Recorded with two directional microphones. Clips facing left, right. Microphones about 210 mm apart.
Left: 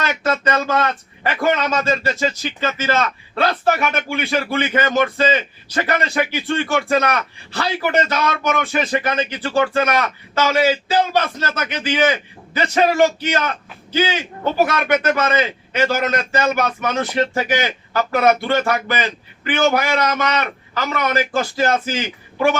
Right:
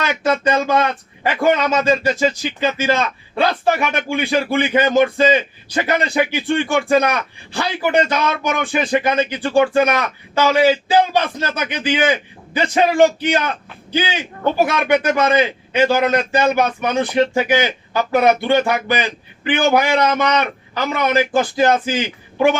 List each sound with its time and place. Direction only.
0.2 s speech: 15° right (ahead or behind)